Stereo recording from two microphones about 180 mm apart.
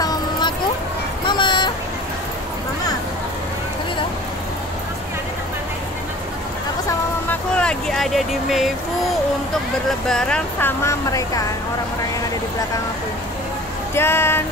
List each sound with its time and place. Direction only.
0.0 s a sound: 20° left (ahead or behind)
6.9 s vehicle: 10° left (ahead or behind)
9.8 s speech: centre (ahead or behind)
10.8 s speech: 15° left (ahead or behind)
13.9 s speech: 15° left (ahead or behind)